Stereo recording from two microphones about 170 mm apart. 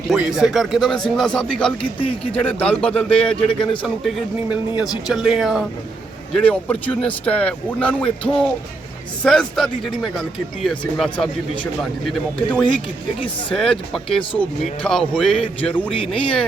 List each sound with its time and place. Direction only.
0.1 s speech: 5° right (ahead or behind)
6.3 s speech: 10° left (ahead or behind)
15.9 s speech: 30° left (ahead or behind)